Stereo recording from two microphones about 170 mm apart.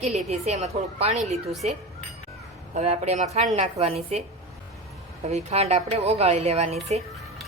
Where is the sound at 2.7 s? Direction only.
40° right (ahead or behind).